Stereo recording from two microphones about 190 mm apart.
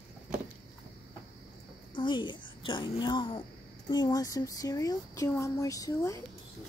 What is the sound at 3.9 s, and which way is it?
Speech, 20° left (ahead or behind).